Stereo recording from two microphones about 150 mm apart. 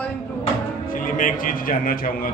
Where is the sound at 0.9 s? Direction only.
65° left (ahead or behind).